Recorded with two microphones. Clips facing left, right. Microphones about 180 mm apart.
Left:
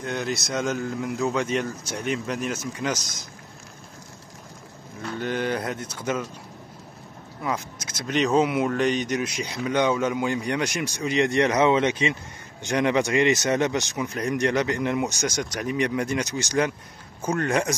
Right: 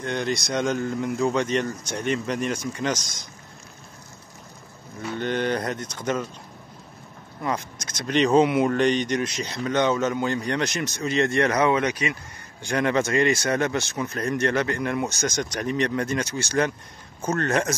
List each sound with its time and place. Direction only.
0.0 s a man's voice: 5° left (ahead or behind)
5.2 s speech: 5° left (ahead or behind)
7.4 s speech: 5° left (ahead or behind)